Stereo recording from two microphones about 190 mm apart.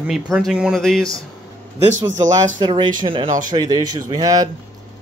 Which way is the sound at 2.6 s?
25° right (ahead or behind).